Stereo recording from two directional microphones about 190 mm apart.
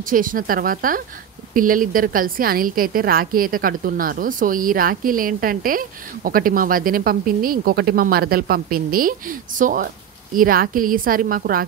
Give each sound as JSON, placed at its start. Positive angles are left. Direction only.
{"t": 0.1, "sound": "a woman's voice", "side_deg": -45}